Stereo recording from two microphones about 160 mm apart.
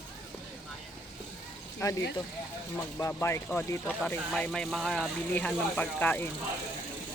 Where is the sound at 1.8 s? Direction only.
20° left (ahead or behind).